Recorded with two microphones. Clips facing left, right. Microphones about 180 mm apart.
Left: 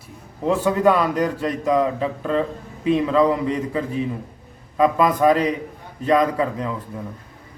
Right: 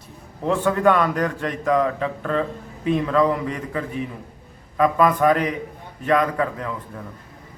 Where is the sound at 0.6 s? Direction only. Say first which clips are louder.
Even; 15° left (ahead or behind).